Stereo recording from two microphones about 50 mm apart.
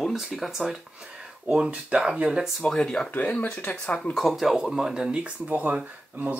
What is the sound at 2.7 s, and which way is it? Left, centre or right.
Speech, centre.